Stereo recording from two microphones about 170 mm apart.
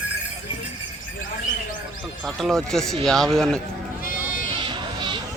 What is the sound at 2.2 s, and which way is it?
Speech, centre (ahead or behind).